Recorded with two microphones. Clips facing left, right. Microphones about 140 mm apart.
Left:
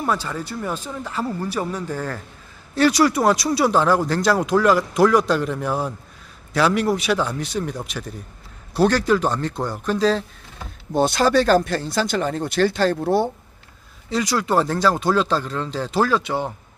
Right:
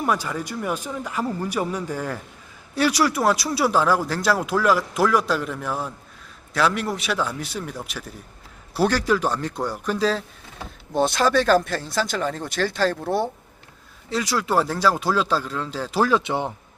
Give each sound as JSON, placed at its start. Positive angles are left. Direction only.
{"t": 0.0, "sound": "speech", "side_deg": -10}
{"t": 13.1, "sound": "speech", "side_deg": 30}
{"t": 14.1, "sound": "speech", "side_deg": 0}